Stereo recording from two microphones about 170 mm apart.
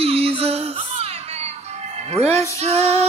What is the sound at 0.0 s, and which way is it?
Music, 35° right (ahead or behind).